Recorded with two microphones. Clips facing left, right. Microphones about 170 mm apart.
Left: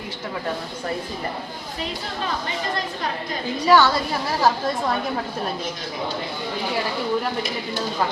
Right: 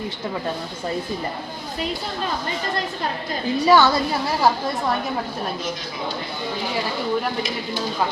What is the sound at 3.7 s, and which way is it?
Speech, 15° right (ahead or behind).